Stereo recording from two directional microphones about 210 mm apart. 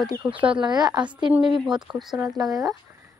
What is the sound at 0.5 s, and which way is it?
Speech, 20° right (ahead or behind).